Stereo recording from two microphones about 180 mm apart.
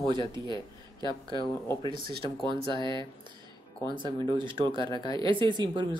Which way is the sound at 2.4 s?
25° right (ahead or behind).